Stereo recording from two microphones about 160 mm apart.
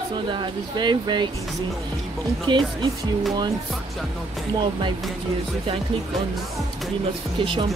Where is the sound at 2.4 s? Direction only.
30° right (ahead or behind).